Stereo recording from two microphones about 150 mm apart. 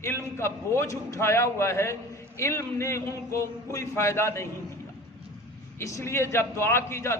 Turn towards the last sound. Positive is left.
turn(degrees=15)  # may be behind; listen again after turning